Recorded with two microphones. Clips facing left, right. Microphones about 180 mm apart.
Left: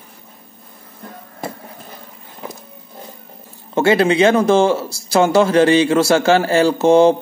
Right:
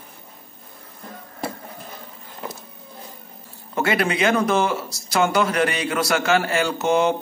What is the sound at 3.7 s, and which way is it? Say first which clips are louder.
Speech: left 8 dB; 25° left (ahead or behind).